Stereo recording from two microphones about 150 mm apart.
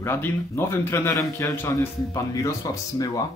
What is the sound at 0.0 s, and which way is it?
A man's voice, 15° left (ahead or behind).